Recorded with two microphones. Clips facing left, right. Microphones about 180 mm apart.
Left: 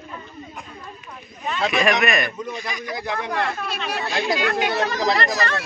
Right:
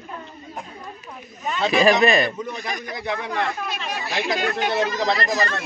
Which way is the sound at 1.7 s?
30° right (ahead or behind).